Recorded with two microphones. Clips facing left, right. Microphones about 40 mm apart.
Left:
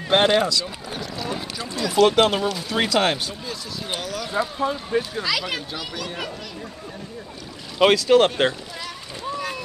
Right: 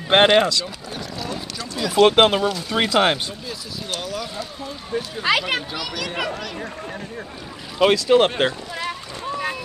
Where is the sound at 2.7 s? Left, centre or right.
Right.